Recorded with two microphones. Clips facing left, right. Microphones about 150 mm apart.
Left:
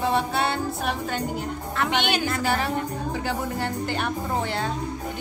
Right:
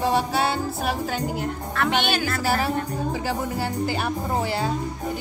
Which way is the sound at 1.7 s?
20° left (ahead or behind).